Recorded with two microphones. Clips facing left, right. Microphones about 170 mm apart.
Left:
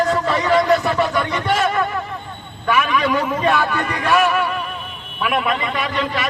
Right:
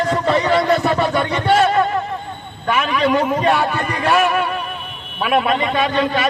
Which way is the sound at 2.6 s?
35° right (ahead or behind).